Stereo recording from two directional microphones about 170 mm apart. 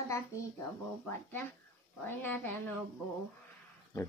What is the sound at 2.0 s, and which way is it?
Speech, 10° left (ahead or behind).